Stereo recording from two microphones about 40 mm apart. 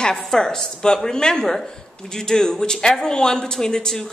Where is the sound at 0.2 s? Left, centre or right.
Centre.